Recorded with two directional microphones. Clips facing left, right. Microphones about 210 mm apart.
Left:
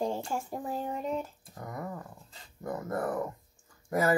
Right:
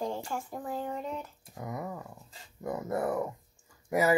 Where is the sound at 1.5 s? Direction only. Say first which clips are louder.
Right 1 dB; 10° right (ahead or behind).